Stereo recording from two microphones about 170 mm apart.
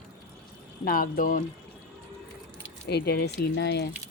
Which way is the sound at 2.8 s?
70° left (ahead or behind).